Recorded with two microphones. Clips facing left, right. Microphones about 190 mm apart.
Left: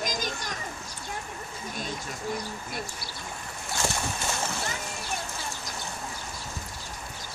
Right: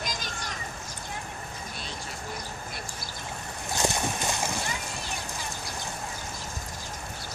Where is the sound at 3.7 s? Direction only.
20° right (ahead or behind).